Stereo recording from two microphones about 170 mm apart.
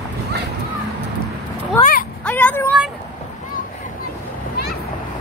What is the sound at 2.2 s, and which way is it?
Vehicle, 10° left (ahead or behind).